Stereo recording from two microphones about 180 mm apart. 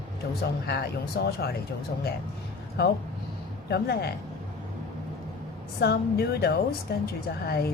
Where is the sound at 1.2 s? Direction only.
65° left (ahead or behind).